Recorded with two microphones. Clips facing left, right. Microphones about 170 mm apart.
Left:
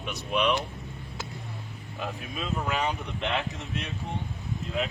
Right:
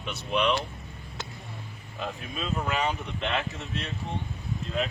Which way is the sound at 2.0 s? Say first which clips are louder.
Even; 5° left (ahead or behind).